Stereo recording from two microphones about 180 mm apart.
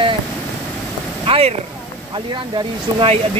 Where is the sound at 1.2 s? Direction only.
30° right (ahead or behind).